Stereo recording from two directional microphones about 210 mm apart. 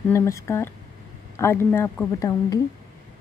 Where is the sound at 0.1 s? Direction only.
15° left (ahead or behind).